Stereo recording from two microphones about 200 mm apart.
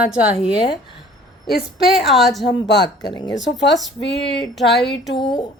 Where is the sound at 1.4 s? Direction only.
Centre (ahead or behind).